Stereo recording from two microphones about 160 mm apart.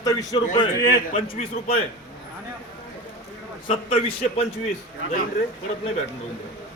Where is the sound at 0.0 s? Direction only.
25° left (ahead or behind).